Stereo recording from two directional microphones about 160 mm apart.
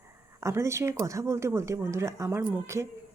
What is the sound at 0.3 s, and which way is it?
A woman's voice, 20° right (ahead or behind).